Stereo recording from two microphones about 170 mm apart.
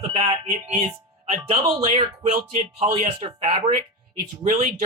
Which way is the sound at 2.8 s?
40° right (ahead or behind).